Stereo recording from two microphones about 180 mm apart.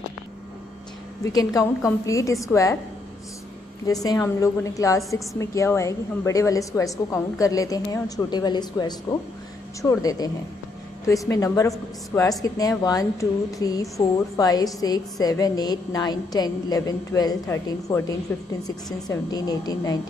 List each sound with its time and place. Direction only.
1.2 s a woman's voice: 20° left (ahead or behind)
3.8 s a woman's voice: 20° left (ahead or behind)